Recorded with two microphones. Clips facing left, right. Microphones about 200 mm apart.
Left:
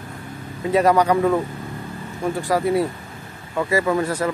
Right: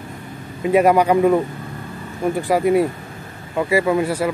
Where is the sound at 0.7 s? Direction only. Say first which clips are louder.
Right 2 dB; 15° right (ahead or behind).